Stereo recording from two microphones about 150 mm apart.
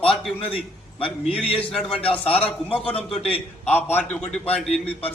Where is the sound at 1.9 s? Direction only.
40° left (ahead or behind).